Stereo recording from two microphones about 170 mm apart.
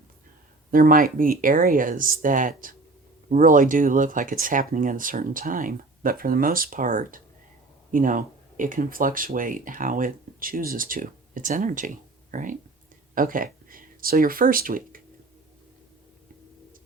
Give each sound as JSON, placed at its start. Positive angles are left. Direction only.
{"t": 0.7, "sound": "speech", "side_deg": -55}